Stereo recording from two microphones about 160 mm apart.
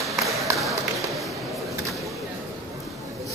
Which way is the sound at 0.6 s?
Centre (ahead or behind).